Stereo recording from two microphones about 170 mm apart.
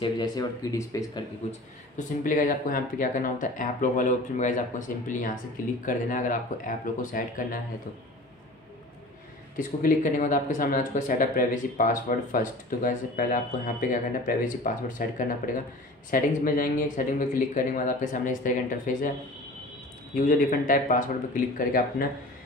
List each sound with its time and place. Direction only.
0.0 s speech: 25° left (ahead or behind)
2.0 s speech: 50° left (ahead or behind)
9.6 s speech: 55° left (ahead or behind)
20.2 s speech: 55° left (ahead or behind)